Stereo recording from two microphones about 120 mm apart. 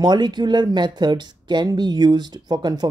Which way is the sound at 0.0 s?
40° right (ahead or behind).